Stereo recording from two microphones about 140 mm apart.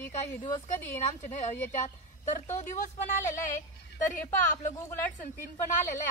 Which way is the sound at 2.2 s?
60° left (ahead or behind).